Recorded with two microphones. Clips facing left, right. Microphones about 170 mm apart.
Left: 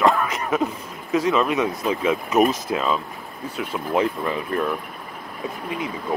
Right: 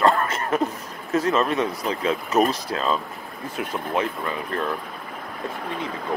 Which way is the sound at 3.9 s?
20° left (ahead or behind).